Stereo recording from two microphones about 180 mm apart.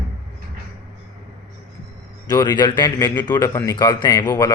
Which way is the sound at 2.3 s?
20° left (ahead or behind).